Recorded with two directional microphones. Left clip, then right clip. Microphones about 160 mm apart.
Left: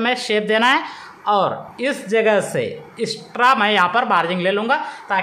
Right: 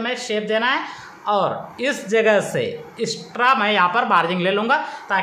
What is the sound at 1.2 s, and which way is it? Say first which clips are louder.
Speech: left 2 dB; 15° left (ahead or behind).